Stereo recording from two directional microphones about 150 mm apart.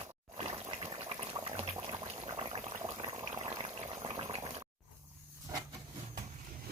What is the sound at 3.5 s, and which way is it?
Boiling, 35° right (ahead or behind).